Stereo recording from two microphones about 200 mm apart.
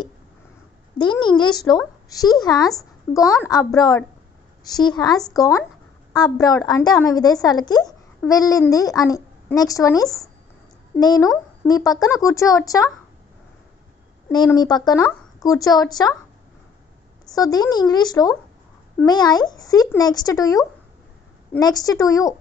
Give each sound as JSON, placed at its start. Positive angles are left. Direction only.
{"t": 0.9, "sound": "a woman's voice", "side_deg": 20}
{"t": 14.3, "sound": "a woman's voice", "side_deg": 20}
{"t": 17.3, "sound": "a woman's voice", "side_deg": 20}